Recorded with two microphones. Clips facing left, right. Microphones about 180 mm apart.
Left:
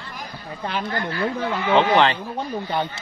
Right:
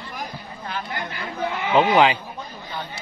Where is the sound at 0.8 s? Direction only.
15° right (ahead or behind).